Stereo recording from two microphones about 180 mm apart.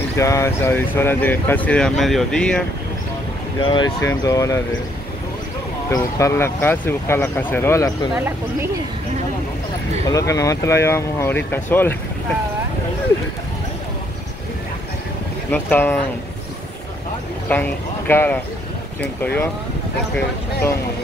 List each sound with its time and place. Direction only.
0.1 s speech: 15° left (ahead or behind)
3.6 s speech: 25° left (ahead or behind)
5.9 s speech: 15° left (ahead or behind)
8.1 s speech: 10° right (ahead or behind)
10.0 s speech: 20° left (ahead or behind)
15.5 s speech: 10° left (ahead or behind)
17.5 s speech: 10° left (ahead or behind)